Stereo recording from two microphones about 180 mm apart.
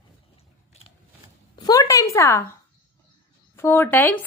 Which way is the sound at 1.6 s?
20° left (ahead or behind).